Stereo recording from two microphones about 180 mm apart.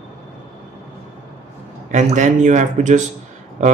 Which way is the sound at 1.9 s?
40° right (ahead or behind).